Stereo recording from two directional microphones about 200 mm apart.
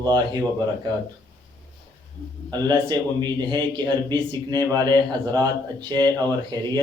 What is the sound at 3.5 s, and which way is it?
A man's voice, 20° right (ahead or behind).